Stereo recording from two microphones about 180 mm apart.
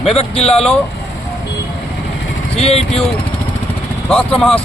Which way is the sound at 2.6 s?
35° left (ahead or behind).